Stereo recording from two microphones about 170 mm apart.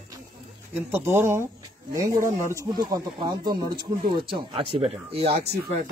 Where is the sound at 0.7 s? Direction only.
15° right (ahead or behind); by 5.2 s 35° right (ahead or behind).